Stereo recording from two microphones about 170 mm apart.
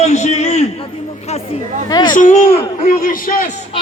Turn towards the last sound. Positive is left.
turn(degrees=55)  # may be behind; listen again after turning